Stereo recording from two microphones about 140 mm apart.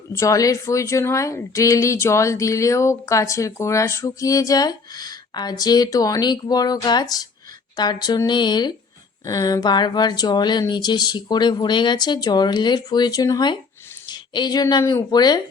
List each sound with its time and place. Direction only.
0.1 s speech: 20° left (ahead or behind)